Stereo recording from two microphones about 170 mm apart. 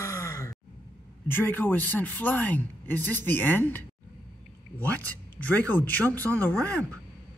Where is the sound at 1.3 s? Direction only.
10° left (ahead or behind).